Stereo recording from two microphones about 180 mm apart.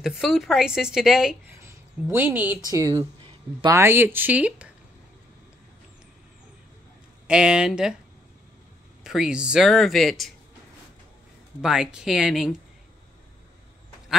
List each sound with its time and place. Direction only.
0.0 s speech: centre (ahead or behind)
1.6 s a sound: 10° right (ahead or behind)
2.7 s speech: 20° right (ahead or behind)
7.2 s speech: 5° right (ahead or behind)
9.0 s speech: 5° right (ahead or behind)
11.6 s speech: 5° right (ahead or behind)